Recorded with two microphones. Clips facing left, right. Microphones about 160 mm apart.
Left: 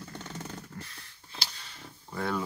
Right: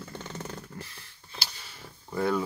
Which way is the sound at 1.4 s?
5° right (ahead or behind).